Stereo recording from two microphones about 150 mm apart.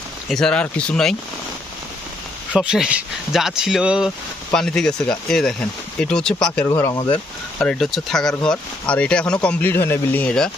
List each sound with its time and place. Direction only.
0.3 s speech: 5° left (ahead or behind)
2.6 s speech: 5° right (ahead or behind)
6.7 s speech: 20° left (ahead or behind)
7.6 s speech: 5° left (ahead or behind)